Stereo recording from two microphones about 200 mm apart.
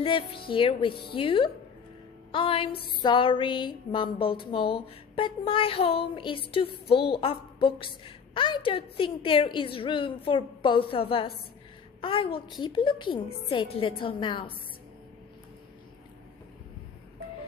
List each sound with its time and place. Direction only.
0.0 s speech: 25° left (ahead or behind)